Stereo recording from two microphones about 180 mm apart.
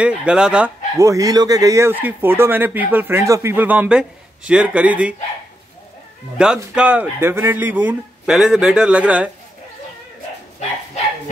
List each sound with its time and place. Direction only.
0.0 s speech: 5° right (ahead or behind)
0.9 s speech: 15° right (ahead or behind)
6.3 s speech: 5° right (ahead or behind)